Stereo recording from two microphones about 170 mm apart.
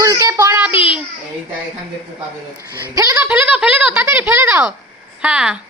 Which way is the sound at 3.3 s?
5° right (ahead or behind).